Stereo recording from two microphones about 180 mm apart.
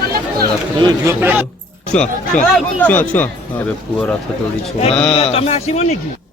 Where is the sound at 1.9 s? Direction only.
5° left (ahead or behind).